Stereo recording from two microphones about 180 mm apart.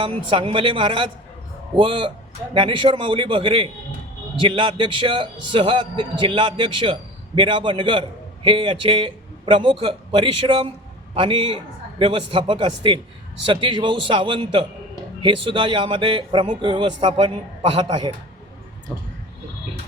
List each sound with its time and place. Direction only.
0.0 s a man's voice: 30° right (ahead or behind)